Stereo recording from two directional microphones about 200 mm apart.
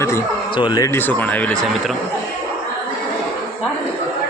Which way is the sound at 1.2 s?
10° left (ahead or behind).